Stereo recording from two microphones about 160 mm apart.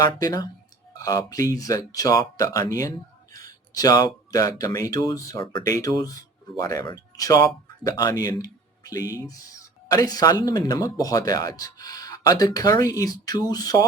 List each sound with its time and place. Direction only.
0.0 s speech: 25° left (ahead or behind)